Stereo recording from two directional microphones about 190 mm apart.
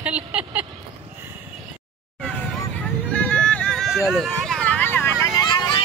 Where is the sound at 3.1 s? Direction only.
5° left (ahead or behind); by 5.8 s 20° left (ahead or behind).